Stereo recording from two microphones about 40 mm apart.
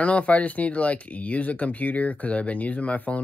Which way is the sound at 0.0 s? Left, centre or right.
Left.